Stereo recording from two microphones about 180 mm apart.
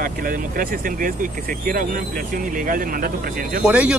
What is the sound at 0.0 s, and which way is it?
Speech, 50° right (ahead or behind).